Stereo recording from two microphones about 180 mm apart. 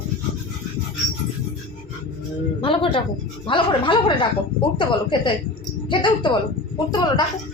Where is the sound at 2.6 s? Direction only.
30° left (ahead or behind).